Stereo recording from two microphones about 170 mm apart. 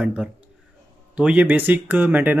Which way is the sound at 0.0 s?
10° right (ahead or behind).